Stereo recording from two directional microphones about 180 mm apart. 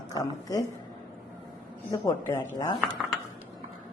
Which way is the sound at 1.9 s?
20° left (ahead or behind).